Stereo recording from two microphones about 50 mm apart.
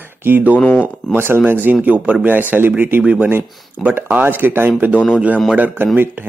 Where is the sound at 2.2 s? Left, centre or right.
Right.